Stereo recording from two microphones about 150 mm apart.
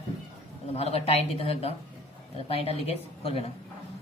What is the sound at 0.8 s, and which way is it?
Speech, 40° left (ahead or behind).